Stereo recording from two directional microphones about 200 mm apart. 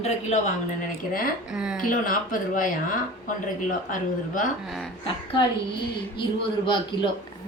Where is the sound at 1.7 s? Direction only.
45° left (ahead or behind).